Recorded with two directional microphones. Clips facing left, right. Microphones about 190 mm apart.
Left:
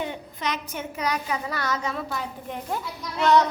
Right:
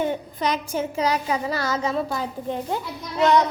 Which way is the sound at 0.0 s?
40° right (ahead or behind).